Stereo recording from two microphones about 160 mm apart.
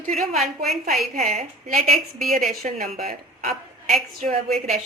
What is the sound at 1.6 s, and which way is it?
A woman's voice, 55° right (ahead or behind).